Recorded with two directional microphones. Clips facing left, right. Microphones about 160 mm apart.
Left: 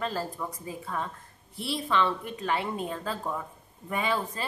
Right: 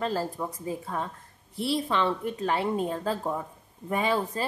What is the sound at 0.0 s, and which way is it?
A woman's voice, 35° right (ahead or behind).